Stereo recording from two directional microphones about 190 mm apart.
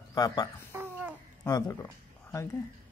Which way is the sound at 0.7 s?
10° right (ahead or behind).